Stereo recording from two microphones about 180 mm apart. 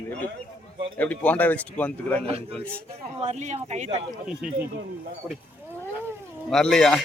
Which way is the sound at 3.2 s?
40° right (ahead or behind).